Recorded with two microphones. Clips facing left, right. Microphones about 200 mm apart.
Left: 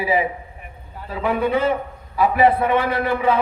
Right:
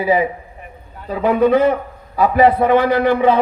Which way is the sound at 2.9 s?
25° right (ahead or behind).